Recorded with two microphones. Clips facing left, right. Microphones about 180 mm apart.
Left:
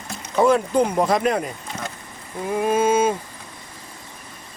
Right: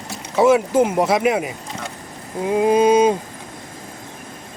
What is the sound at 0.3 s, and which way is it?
Speech, 5° right (ahead or behind).